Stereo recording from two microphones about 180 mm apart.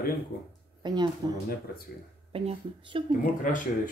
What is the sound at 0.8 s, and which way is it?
Speech, 25° right (ahead or behind).